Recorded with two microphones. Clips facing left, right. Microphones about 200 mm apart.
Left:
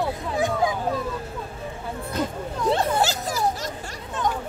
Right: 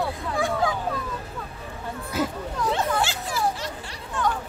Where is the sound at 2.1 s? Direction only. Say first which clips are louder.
Right 1 dB; 5° right (ahead or behind).